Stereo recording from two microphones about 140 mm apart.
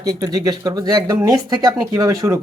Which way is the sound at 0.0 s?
25° right (ahead or behind).